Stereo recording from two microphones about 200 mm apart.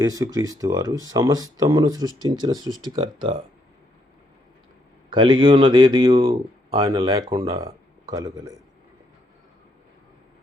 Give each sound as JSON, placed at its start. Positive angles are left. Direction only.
{"t": 0.0, "sound": "speech", "side_deg": -15}
{"t": 5.1, "sound": "speech", "side_deg": -25}